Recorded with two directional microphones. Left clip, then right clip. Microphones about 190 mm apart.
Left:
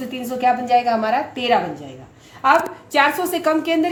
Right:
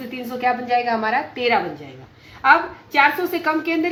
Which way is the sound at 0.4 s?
55° left (ahead or behind).